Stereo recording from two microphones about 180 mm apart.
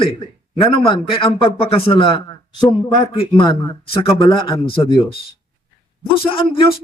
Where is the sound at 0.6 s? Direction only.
30° left (ahead or behind).